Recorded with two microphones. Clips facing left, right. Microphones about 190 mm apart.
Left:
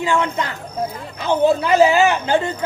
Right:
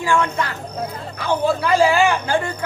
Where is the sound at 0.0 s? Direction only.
20° left (ahead or behind).